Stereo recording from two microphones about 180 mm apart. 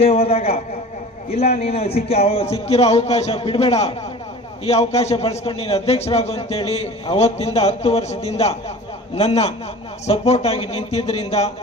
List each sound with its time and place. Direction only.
0.0 s a man's voice: 35° left (ahead or behind)